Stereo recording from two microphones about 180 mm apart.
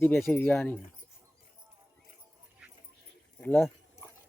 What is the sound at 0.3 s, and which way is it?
Speech, 10° left (ahead or behind).